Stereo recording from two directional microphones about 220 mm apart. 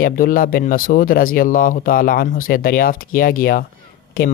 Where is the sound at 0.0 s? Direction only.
40° left (ahead or behind).